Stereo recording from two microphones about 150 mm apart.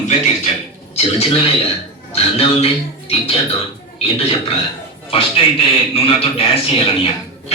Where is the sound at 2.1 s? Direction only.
40° left (ahead or behind).